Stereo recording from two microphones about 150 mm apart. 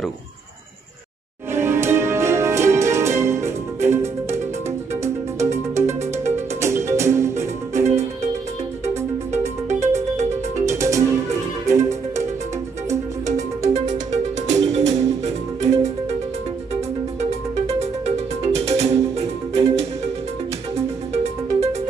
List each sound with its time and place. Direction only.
1.5 s music: 15° right (ahead or behind)
10.6 s music: 20° right (ahead or behind)
13.7 s music: 50° right (ahead or behind)
17.6 s music: 45° right (ahead or behind)